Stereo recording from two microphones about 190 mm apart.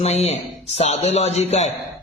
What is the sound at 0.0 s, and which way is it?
A man's voice, 35° left (ahead or behind).